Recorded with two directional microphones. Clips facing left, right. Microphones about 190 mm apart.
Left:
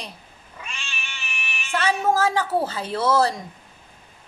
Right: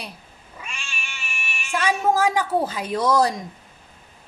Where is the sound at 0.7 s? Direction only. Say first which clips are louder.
Even; 10° right (ahead or behind).